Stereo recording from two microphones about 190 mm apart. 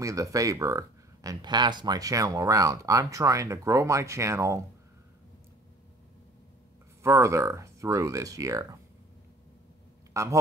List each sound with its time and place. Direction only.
0.0 s speech: 15° right (ahead or behind)
7.0 s speech: 15° right (ahead or behind)
10.1 s speech: 15° right (ahead or behind)